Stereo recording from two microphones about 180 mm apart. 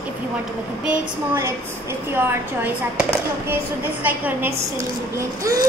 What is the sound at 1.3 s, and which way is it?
Speech, 15° right (ahead or behind).